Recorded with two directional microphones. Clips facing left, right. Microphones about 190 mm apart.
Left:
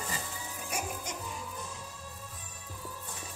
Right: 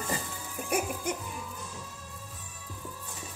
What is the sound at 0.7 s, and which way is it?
Music, 55° right (ahead or behind).